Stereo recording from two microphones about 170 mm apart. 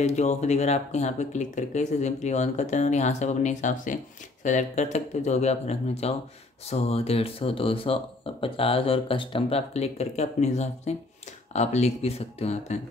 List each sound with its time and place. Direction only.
0.0 s speech: 40° left (ahead or behind)